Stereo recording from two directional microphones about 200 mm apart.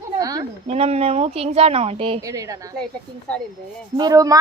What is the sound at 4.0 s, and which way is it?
Speech, 20° right (ahead or behind).